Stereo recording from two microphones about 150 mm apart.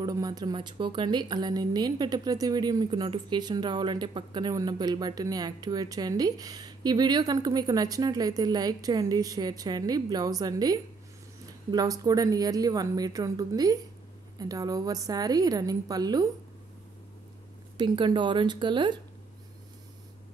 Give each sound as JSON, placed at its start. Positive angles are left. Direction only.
{"t": 0.0, "sound": "a woman's voice", "side_deg": -25}
{"t": 17.7, "sound": "speech", "side_deg": -35}